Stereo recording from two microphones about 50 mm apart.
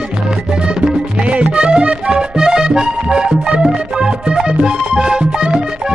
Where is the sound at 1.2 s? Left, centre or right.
Right.